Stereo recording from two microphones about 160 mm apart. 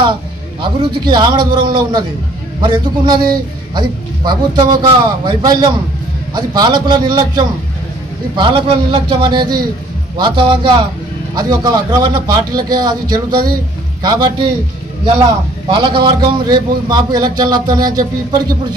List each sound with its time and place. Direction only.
0.6 s a man's voice: 30° right (ahead or behind)
15.7 s a man's voice: 30° right (ahead or behind)